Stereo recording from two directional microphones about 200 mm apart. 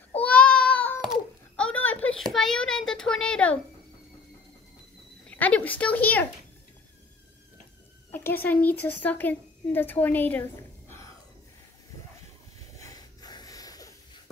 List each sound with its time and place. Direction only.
0.2 s a sound: 5° left (ahead or behind)
5.3 s speech: 5° left (ahead or behind)
8.1 s a woman's voice: 10° left (ahead or behind)
12.8 s snort: 20° left (ahead or behind)